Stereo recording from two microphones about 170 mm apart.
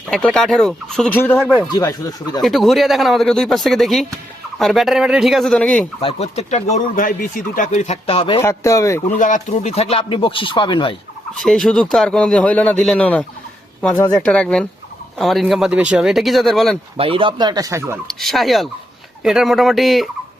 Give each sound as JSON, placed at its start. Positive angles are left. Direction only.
{"t": 0.1, "sound": "speech", "side_deg": 5}
{"t": 1.7, "sound": "speech", "side_deg": 20}
{"t": 2.4, "sound": "speech", "side_deg": 0}
{"t": 6.0, "sound": "speech", "side_deg": 35}
{"t": 8.4, "sound": "speech", "side_deg": 20}
{"t": 9.1, "sound": "speech", "side_deg": 45}
{"t": 11.3, "sound": "speech", "side_deg": 5}
{"t": 17.0, "sound": "speech", "side_deg": -30}
{"t": 18.1, "sound": "speech", "side_deg": 0}